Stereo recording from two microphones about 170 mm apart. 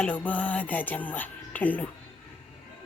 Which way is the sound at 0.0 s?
10° left (ahead or behind).